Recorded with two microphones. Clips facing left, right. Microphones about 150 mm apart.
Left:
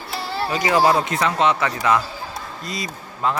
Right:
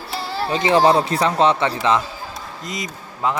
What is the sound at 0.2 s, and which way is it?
Music, centre (ahead or behind).